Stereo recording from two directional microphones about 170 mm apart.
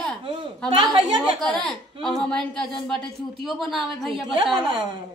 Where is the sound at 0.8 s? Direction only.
25° right (ahead or behind).